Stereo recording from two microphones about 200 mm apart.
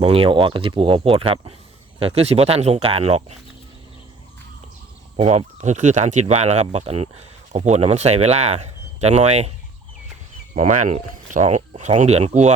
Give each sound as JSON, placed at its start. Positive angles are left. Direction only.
{"t": 0.0, "sound": "speech", "side_deg": -30}
{"t": 5.1, "sound": "speech", "side_deg": -30}
{"t": 10.5, "sound": "speech", "side_deg": -35}